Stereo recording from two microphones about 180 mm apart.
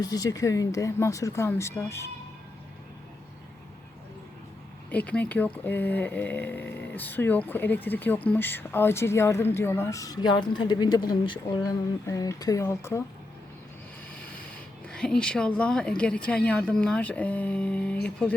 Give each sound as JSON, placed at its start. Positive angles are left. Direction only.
{"t": 0.0, "sound": "speech", "side_deg": 20}
{"t": 4.9, "sound": "speech", "side_deg": 10}
{"t": 14.8, "sound": "speech", "side_deg": 5}